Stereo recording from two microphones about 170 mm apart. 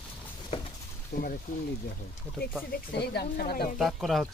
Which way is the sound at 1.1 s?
75° left (ahead or behind).